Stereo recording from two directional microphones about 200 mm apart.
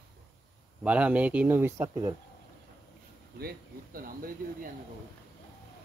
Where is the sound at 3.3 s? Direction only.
50° right (ahead or behind).